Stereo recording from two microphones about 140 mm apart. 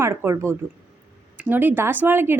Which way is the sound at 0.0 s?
20° right (ahead or behind).